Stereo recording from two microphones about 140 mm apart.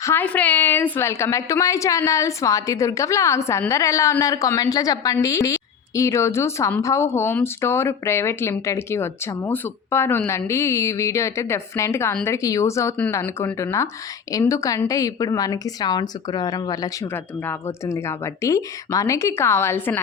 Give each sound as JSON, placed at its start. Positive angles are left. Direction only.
{"t": 0.0, "sound": "a woman's voice", "side_deg": 15}